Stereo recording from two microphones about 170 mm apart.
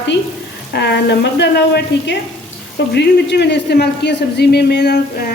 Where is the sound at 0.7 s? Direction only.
85° left.